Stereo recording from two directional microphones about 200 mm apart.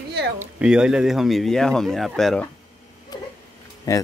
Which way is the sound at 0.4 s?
5° right (ahead or behind).